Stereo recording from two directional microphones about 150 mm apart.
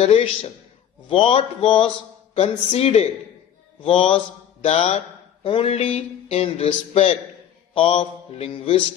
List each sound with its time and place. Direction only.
0.0 s mantra: 40° left (ahead or behind)
2.3 s speech: 45° left (ahead or behind)
3.8 s mantra: 35° left (ahead or behind)
4.6 s speech: 45° left (ahead or behind)
7.7 s mantra: 40° left (ahead or behind)